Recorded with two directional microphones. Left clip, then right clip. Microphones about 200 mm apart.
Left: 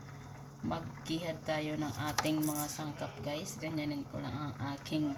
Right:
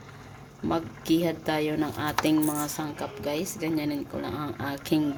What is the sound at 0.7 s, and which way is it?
Speech, 55° right (ahead or behind).